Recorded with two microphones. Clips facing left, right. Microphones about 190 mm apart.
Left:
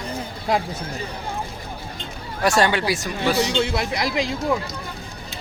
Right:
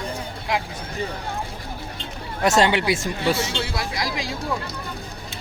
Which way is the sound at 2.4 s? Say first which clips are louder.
Right 1 dB; 20° right (ahead or behind).